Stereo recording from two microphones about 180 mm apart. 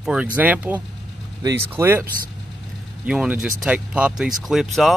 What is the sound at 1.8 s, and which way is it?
Speech, 10° right (ahead or behind).